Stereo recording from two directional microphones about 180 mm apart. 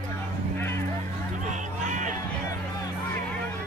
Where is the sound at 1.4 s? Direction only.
45° right (ahead or behind).